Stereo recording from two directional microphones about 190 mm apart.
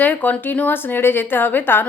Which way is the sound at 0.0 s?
10° left (ahead or behind).